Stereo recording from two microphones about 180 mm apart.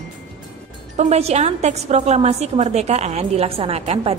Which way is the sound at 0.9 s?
35° right (ahead or behind).